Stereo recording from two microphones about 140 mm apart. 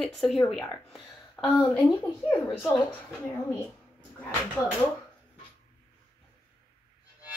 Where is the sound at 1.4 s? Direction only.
20° left (ahead or behind).